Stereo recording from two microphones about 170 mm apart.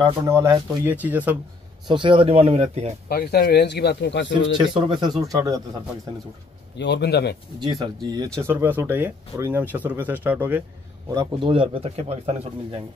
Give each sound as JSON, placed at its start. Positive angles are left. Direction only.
{"t": 0.3, "sound": "speech", "side_deg": -15}
{"t": 1.9, "sound": "speech", "side_deg": -30}
{"t": 3.1, "sound": "speech", "side_deg": 65}
{"t": 4.6, "sound": "speech", "side_deg": -30}
{"t": 6.8, "sound": "speech", "side_deg": 85}
{"t": 7.6, "sound": "speech", "side_deg": -25}
{"t": 11.3, "sound": "speech", "side_deg": -30}